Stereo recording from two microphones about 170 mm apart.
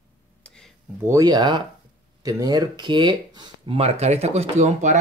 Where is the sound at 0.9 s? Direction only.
15° right (ahead or behind); by 4.9 s 45° right (ahead or behind).